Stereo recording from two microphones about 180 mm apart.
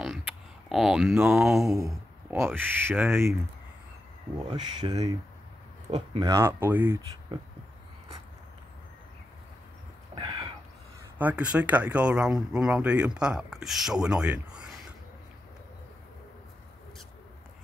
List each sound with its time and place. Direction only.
0.7 s speech: centre (ahead or behind)
1.8 s speech: 15° right (ahead or behind)
4.4 s speech: 25° right (ahead or behind)
6.2 s speech: 15° right (ahead or behind)
10.1 s a sound: 35° right (ahead or behind)
11.1 s speech: 10° right (ahead or behind)